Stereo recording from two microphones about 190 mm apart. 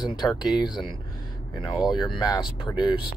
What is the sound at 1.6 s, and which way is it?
Speech, centre (ahead or behind).